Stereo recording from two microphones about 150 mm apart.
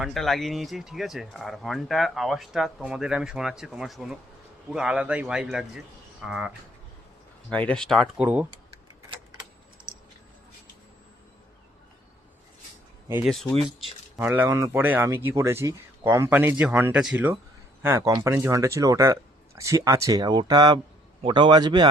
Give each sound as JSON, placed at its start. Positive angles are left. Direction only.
{"t": 0.0, "sound": "speech", "side_deg": 0}
{"t": 7.5, "sound": "speech", "side_deg": 10}
{"t": 8.2, "sound": "speech", "side_deg": -10}
{"t": 13.2, "sound": "speech", "side_deg": 5}
{"t": 14.2, "sound": "speech", "side_deg": -15}
{"t": 17.8, "sound": "a man's voice", "side_deg": -15}